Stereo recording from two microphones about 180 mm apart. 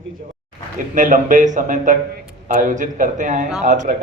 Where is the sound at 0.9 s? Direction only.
45° right (ahead or behind).